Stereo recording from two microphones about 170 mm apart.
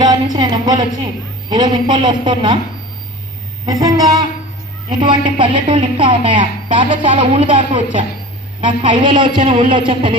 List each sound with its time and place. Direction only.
0.1 s a woman's voice: 25° right (ahead or behind)
3.6 s a woman's voice: 20° right (ahead or behind)